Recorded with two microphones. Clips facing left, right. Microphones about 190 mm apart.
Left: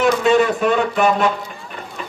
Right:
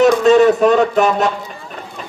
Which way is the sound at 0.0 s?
40° right (ahead or behind).